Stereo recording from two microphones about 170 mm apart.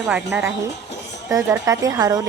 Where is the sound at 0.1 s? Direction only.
5° right (ahead or behind).